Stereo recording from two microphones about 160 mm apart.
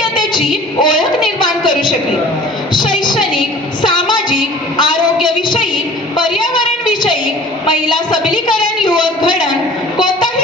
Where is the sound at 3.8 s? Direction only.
30° left (ahead or behind).